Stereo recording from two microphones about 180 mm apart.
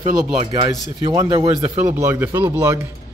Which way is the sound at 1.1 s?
25° right (ahead or behind).